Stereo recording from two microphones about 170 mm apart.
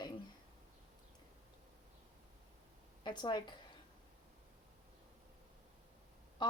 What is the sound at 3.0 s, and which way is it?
Speech, 25° left (ahead or behind).